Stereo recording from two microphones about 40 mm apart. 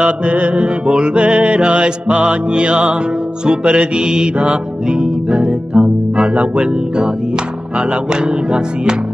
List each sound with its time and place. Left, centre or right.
0.0 s music: right
4.8 s speech: right
7.9 s music: right